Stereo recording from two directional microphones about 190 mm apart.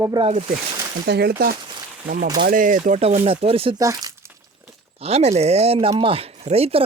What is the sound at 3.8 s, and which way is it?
Crumpling, 20° right (ahead or behind).